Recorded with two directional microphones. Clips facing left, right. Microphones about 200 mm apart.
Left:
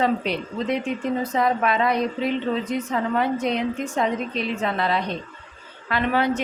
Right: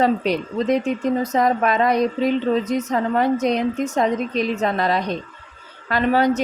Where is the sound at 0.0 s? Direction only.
40° right (ahead or behind).